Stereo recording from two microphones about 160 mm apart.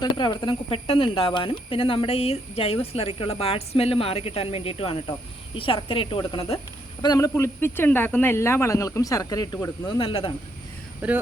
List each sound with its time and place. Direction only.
0.0 s speech: 30° left (ahead or behind)
7.0 s speech: 25° left (ahead or behind)
11.0 s speech: 10° right (ahead or behind)